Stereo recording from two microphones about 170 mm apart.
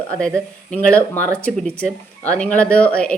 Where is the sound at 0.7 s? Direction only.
10° left (ahead or behind).